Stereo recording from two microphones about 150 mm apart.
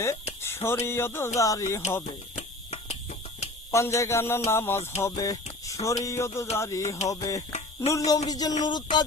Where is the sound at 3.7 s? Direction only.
20° left (ahead or behind).